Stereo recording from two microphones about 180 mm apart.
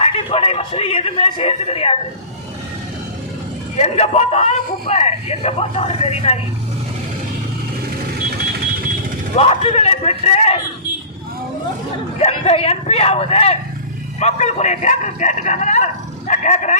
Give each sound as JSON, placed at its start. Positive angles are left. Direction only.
{"t": 0.0, "sound": "speech", "side_deg": 35}
{"t": 3.8, "sound": "speech", "side_deg": 35}
{"t": 9.3, "sound": "speech", "side_deg": 35}
{"t": 12.2, "sound": "speech", "side_deg": 35}